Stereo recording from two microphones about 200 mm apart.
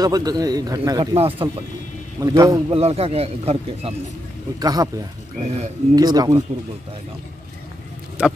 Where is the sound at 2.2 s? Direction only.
15° right (ahead or behind).